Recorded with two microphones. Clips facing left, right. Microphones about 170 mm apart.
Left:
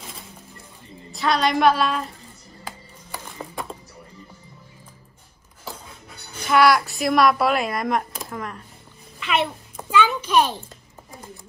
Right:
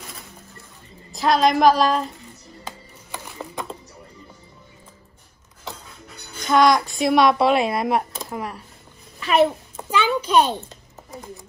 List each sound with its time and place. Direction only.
1.1 s a child's voice: centre (ahead or behind)
6.4 s a child's voice: 5° left (ahead or behind)
9.2 s a child's voice: 40° right (ahead or behind)
9.8 s a sound: 30° right (ahead or behind)